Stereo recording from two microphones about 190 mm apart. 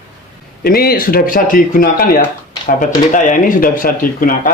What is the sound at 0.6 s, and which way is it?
Speech, 50° left (ahead or behind).